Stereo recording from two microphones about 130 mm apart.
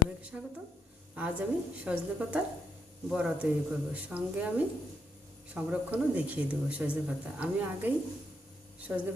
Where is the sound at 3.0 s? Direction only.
10° right (ahead or behind).